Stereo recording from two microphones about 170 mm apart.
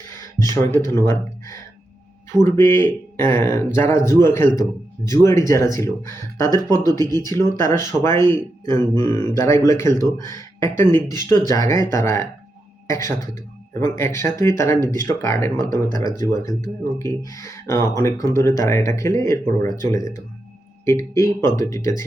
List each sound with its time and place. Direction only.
0.9 s a sound: 15° left (ahead or behind)
2.4 s speech: 15° left (ahead or behind)
7.0 s speech: 25° right (ahead or behind)
7.6 s speech: 20° left (ahead or behind)